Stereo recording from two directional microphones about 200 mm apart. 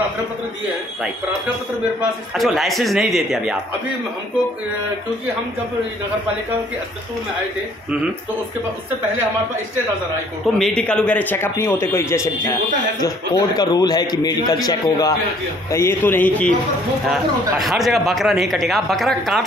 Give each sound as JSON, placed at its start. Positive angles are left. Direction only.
{"t": 2.0, "sound": "speech", "side_deg": 0}
{"t": 10.4, "sound": "a man's voice", "side_deg": 5}